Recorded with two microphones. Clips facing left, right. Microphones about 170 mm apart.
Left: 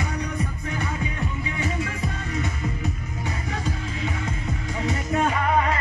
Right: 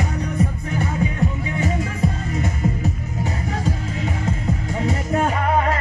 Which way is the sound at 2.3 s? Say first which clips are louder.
Right 5 dB; 40° right (ahead or behind).